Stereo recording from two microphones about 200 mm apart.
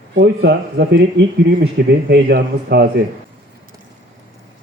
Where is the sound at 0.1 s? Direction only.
55° right (ahead or behind).